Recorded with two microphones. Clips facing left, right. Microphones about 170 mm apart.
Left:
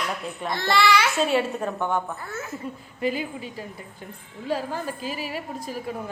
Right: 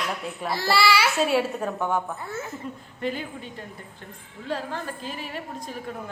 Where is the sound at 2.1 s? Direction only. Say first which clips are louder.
Right 1 dB; 25° right (ahead or behind).